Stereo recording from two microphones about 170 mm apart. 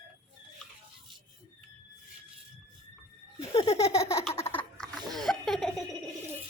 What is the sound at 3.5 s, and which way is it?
Laughter, 35° left (ahead or behind).